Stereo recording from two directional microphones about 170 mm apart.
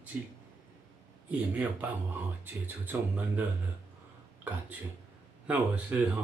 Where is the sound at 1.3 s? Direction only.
10° right (ahead or behind).